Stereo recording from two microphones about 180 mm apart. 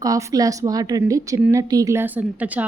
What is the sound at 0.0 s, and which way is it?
A woman's voice, 20° right (ahead or behind).